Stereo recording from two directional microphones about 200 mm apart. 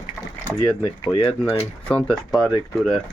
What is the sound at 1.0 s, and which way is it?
Speech, 25° left (ahead or behind).